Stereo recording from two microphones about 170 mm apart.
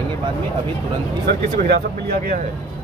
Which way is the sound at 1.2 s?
65° right (ahead or behind).